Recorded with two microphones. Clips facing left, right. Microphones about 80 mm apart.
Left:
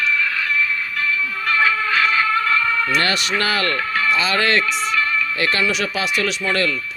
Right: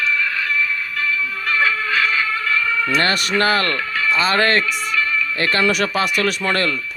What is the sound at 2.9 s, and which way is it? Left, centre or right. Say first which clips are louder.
Speech: right 2 dB; right.